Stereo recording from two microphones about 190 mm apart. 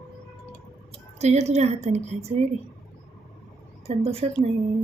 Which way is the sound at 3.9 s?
30° right (ahead or behind).